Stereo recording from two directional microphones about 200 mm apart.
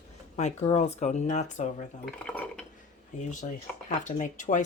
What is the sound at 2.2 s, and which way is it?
Dishes, 5° left (ahead or behind).